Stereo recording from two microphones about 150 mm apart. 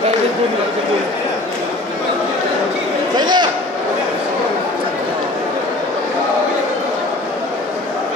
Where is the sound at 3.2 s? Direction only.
30° right (ahead or behind).